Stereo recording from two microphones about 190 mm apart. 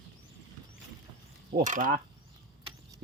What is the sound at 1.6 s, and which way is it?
Speech, 45° right (ahead or behind).